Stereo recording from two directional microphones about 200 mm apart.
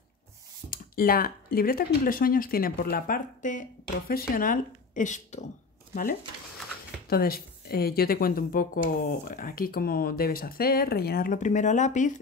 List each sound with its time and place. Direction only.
0.7 s speech: 45° left (ahead or behind)
7.1 s speech: 50° left (ahead or behind)